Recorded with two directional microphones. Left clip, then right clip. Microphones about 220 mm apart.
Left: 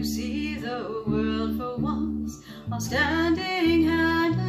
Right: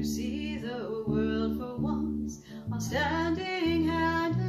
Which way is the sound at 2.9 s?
20° left (ahead or behind).